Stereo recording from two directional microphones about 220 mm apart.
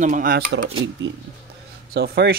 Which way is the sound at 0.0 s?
40° right (ahead or behind).